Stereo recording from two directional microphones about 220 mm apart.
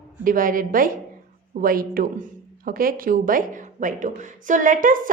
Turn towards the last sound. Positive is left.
turn(degrees=-35)  # may be behind; listen again after turning